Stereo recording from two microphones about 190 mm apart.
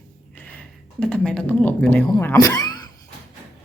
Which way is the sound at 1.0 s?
5° left (ahead or behind).